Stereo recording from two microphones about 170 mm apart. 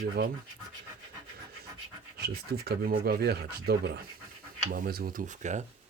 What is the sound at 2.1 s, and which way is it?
Speech, 70° right (ahead or behind).